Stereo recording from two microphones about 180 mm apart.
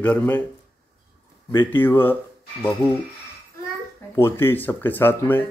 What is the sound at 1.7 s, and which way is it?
Speech, 10° left (ahead or behind).